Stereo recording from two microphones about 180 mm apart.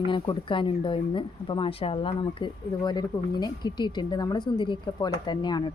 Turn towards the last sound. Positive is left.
turn(degrees=25)  # may be behind; listen again after turning